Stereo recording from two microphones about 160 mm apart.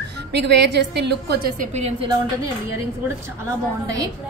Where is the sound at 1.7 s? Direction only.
40° right (ahead or behind).